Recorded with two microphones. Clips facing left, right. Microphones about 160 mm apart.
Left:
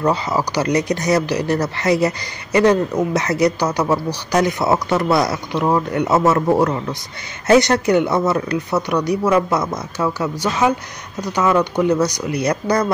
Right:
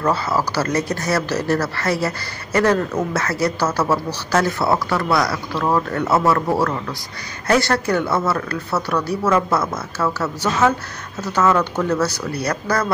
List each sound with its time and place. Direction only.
0.0 s speech: 15° left (ahead or behind)